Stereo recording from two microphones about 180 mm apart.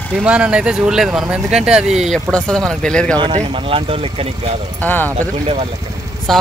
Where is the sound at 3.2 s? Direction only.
35° right (ahead or behind).